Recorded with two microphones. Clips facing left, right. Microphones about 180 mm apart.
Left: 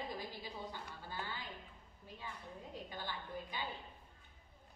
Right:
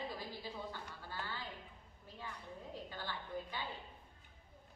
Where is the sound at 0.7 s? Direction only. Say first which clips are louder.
Even; 15° left (ahead or behind).